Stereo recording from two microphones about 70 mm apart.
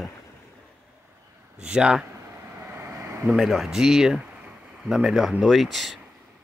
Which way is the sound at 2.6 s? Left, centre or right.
Right.